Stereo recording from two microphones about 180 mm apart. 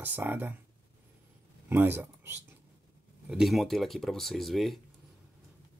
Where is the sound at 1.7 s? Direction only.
10° right (ahead or behind).